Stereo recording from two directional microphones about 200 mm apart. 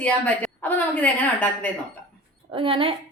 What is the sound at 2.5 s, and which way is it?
Speech, 25° right (ahead or behind).